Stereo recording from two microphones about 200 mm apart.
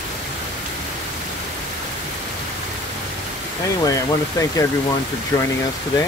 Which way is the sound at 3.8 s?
15° left (ahead or behind).